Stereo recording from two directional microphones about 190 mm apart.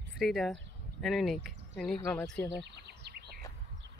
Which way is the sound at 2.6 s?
60° right (ahead or behind).